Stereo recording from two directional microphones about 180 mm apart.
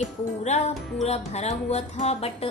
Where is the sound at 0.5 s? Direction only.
40° left (ahead or behind).